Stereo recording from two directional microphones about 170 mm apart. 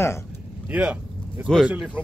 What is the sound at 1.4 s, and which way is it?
Speech, centre (ahead or behind).